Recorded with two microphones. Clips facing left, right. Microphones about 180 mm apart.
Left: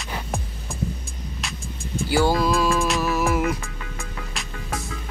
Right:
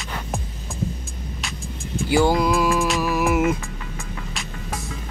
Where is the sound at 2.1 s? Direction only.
20° right (ahead or behind).